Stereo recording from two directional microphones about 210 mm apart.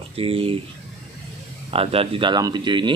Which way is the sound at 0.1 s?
25° right (ahead or behind).